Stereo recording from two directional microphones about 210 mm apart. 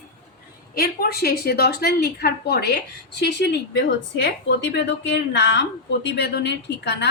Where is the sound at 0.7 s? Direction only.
50° left (ahead or behind).